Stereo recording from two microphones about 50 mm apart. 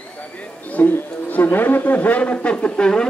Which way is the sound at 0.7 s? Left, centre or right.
Left.